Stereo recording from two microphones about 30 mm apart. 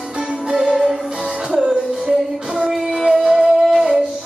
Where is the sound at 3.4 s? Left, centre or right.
Centre.